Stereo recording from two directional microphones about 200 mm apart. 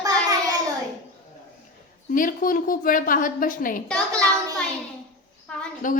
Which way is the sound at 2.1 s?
40° left (ahead or behind).